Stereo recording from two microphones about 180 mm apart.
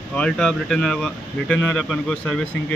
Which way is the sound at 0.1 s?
5° left (ahead or behind).